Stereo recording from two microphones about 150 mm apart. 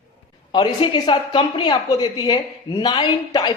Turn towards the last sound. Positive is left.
turn(degrees=30)  # may be behind; listen again after turning